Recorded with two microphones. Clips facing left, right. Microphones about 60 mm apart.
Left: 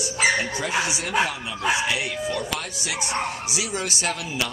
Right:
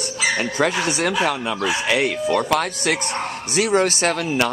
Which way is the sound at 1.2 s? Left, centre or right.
Right.